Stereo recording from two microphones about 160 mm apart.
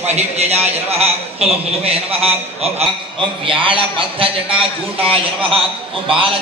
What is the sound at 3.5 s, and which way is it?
A man's voice, 35° right (ahead or behind).